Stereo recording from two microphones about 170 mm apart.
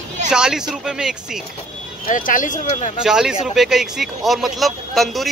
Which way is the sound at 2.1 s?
50° left (ahead or behind).